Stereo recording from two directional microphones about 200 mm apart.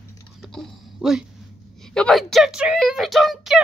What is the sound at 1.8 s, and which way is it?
A woman's voice, 5° left (ahead or behind).